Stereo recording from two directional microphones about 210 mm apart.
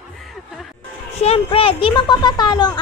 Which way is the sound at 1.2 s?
25° left (ahead or behind).